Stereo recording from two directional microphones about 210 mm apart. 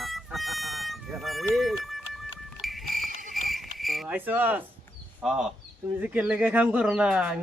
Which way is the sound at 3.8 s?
Centre (ahead or behind).